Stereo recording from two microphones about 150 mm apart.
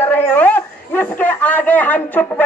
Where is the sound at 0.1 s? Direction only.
10° left (ahead or behind).